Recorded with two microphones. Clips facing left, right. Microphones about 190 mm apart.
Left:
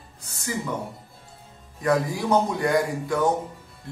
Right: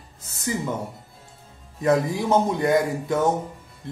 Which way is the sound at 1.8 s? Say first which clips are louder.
Right 2 dB; 25° right (ahead or behind).